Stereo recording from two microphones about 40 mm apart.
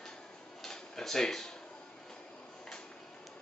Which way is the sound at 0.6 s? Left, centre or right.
Centre.